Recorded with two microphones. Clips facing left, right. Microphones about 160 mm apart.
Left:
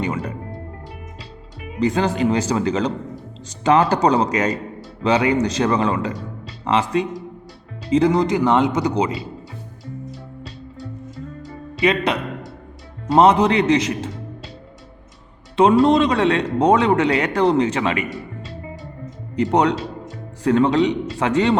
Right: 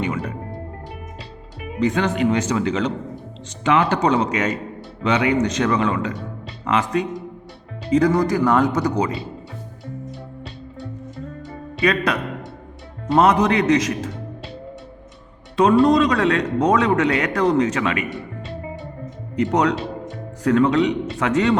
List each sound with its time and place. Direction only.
0.0 s music: 35° left (ahead or behind)
1.8 s speech: 35° left (ahead or behind)
11.8 s speech: 25° left (ahead or behind)
13.1 s speech: 30° left (ahead or behind)
15.8 s speech: 30° left (ahead or behind)
19.4 s speech: 30° left (ahead or behind)